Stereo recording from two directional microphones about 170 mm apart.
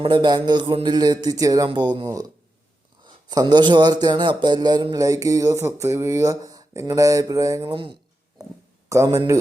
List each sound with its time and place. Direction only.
0.0 s speech: 25° right (ahead or behind)
8.9 s speech: 15° right (ahead or behind)